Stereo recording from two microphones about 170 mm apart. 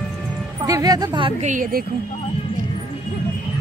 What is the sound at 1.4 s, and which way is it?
Speech, 50° right (ahead or behind).